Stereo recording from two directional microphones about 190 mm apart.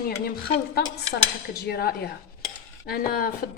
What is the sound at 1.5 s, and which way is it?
Speech, 55° left (ahead or behind).